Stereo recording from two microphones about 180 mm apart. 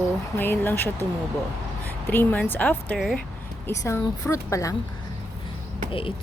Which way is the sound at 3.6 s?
15° left (ahead or behind).